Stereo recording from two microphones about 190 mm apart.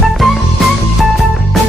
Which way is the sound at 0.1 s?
Centre (ahead or behind).